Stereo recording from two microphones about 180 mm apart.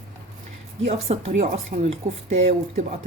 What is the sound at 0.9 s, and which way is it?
Speech, 35° right (ahead or behind).